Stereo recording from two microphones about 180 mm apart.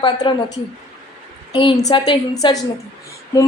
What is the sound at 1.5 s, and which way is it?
A woman's voice, 25° left (ahead or behind).